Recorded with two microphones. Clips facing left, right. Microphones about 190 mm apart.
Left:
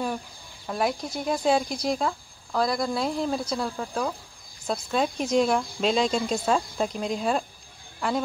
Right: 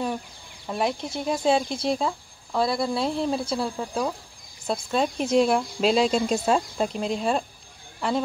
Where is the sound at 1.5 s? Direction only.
25° right (ahead or behind).